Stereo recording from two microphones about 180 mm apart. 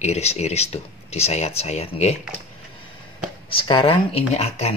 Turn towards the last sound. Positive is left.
turn(degrees=35)  # may be behind; listen again after turning